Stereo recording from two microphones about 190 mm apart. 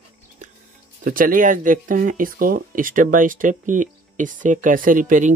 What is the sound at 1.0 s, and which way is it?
Speech, 45° right (ahead or behind).